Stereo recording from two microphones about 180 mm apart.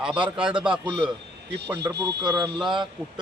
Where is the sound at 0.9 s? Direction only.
25° right (ahead or behind).